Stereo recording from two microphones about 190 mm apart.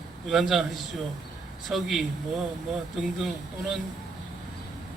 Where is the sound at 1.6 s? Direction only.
Centre (ahead or behind).